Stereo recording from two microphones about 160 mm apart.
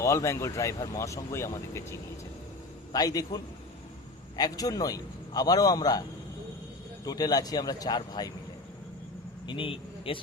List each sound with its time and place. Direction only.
0.0 s speech: 20° left (ahead or behind)
7.0 s speech: 25° left (ahead or behind)
9.5 s speech: 35° left (ahead or behind)